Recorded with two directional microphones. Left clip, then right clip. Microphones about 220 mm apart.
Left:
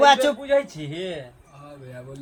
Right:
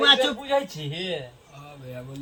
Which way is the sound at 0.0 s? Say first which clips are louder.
Left 3 dB; 15° left (ahead or behind).